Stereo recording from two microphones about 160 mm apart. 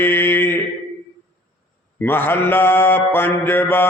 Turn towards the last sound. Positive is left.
turn(degrees=15)  # may be behind; listen again after turning